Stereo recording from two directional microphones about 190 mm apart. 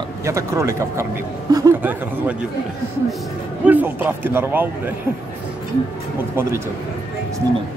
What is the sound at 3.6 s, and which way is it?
A man's voice, 10° right (ahead or behind).